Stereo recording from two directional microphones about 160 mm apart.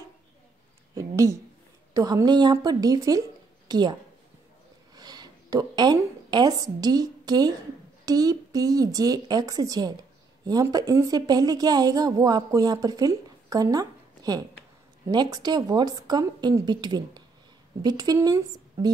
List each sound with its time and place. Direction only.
0.9 s a woman's voice: 20° right (ahead or behind)
4.9 s a woman's voice: 25° right (ahead or behind)